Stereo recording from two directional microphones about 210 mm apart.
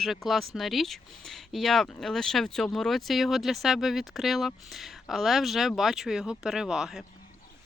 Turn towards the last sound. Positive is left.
turn(degrees=0)  # may be behind; listen again after turning